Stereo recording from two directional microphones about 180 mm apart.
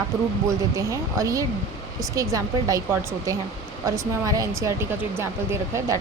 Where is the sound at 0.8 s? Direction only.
15° right (ahead or behind).